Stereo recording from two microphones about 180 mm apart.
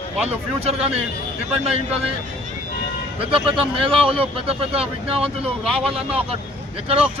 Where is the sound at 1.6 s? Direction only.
35° right (ahead or behind).